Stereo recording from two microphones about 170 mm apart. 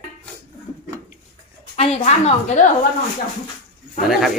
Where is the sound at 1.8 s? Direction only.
40° left (ahead or behind).